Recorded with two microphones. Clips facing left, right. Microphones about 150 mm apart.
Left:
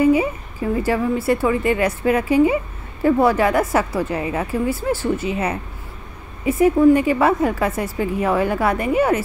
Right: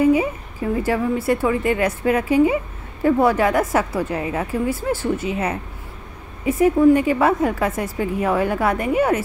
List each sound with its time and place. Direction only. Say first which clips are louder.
0.0 s speech: left 1 dB; 5° left (ahead or behind)